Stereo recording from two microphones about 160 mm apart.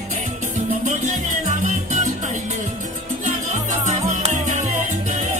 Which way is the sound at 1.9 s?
50° right (ahead or behind).